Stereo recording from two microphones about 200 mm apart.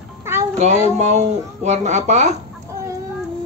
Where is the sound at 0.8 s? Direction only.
35° right (ahead or behind).